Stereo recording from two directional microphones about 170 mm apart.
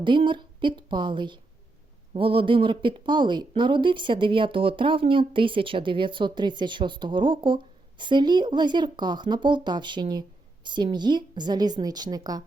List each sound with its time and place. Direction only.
0.0 s speech: 30° right (ahead or behind)